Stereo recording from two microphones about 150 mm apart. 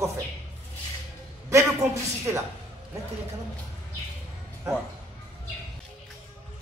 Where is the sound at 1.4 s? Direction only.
20° right (ahead or behind).